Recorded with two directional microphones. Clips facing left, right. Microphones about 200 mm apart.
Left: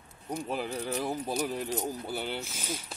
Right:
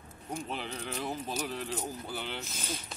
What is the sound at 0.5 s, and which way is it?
Speech, 10° left (ahead or behind).